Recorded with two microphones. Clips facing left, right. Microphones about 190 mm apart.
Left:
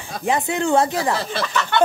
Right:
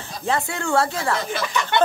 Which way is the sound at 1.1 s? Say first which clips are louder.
Even; 30° left (ahead or behind).